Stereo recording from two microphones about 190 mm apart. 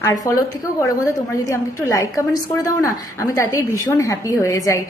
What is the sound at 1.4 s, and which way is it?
A woman's voice, 15° left (ahead or behind).